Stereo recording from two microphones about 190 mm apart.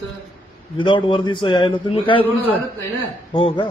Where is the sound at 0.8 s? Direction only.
25° left (ahead or behind).